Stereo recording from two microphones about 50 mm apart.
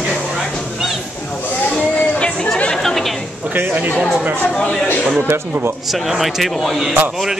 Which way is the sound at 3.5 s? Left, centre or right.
Right.